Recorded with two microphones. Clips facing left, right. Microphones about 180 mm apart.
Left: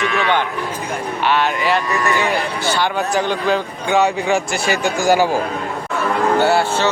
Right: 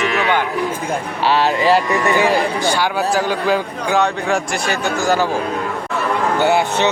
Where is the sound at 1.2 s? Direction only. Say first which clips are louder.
Right 3 dB; 35° right (ahead or behind).